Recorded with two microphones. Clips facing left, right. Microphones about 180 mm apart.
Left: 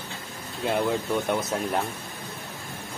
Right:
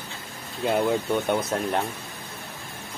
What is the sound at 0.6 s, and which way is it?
Speech, centre (ahead or behind).